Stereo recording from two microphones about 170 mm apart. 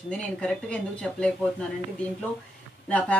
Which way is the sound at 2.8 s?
5° left (ahead or behind).